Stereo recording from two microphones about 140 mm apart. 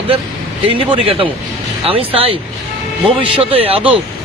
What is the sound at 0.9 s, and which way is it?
Speech, 40° right (ahead or behind).